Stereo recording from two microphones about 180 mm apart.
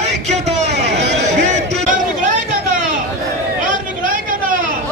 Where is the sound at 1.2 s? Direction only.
40° right (ahead or behind).